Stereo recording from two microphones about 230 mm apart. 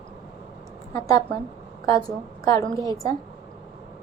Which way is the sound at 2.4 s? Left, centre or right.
Centre.